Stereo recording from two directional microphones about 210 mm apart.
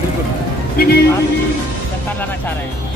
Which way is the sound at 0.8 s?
45° left (ahead or behind).